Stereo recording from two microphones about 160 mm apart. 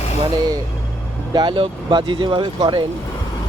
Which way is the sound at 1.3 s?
30° right (ahead or behind).